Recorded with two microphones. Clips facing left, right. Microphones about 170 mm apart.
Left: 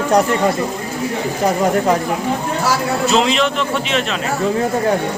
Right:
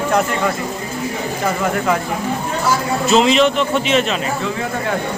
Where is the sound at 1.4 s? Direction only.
35° left (ahead or behind).